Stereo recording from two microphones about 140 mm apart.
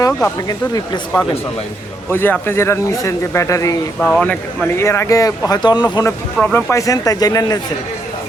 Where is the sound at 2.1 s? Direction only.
15° left (ahead or behind).